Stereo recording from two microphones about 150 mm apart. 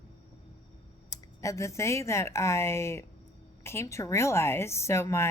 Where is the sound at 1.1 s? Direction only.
20° left (ahead or behind).